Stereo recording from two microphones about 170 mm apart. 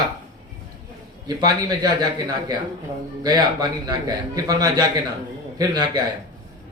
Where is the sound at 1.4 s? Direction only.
25° right (ahead or behind).